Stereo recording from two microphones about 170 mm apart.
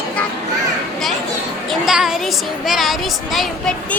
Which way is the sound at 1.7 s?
Centre (ahead or behind).